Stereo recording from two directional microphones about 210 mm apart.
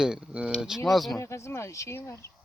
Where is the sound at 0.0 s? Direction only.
5° right (ahead or behind).